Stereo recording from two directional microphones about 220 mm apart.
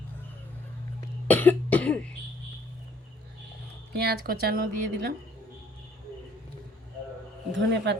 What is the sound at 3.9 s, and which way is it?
Speech, 45° right (ahead or behind).